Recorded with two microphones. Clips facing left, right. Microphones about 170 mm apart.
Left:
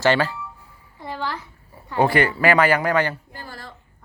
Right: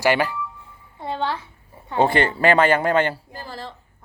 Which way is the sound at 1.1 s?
25° right (ahead or behind).